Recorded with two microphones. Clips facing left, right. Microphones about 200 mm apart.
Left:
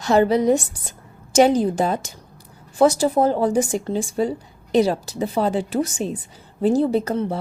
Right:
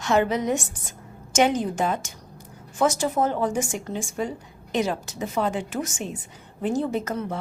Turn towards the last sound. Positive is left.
turn(degrees=30)  # may be behind; listen again after turning